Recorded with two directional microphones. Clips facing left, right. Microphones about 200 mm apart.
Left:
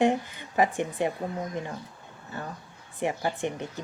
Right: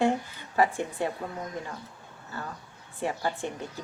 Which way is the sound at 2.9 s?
15° left (ahead or behind).